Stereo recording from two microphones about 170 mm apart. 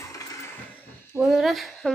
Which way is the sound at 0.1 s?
20° left (ahead or behind).